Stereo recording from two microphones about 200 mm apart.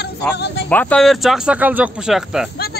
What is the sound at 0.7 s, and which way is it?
Speech, 5° left (ahead or behind).